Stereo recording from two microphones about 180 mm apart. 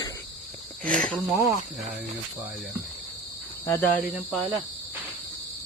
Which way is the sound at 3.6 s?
15° left (ahead or behind).